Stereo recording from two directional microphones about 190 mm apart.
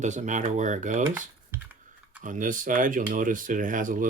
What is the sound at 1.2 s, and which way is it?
Computer keyboard, 10° right (ahead or behind).